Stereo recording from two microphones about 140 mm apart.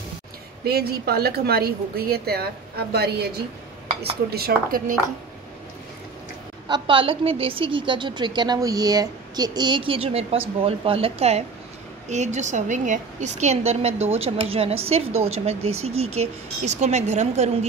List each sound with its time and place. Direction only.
0.7 s a woman's voice: 90° right
4.3 s a woman's voice: 90° right
6.7 s a woman's voice: 40° right (ahead or behind); by 17.6 s 55° right (ahead or behind)